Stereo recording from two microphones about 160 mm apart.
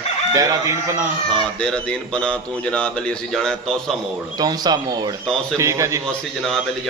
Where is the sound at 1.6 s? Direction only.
5° left (ahead or behind).